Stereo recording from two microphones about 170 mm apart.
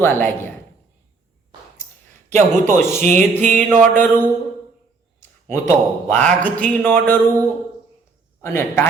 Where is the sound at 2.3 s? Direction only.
45° right (ahead or behind).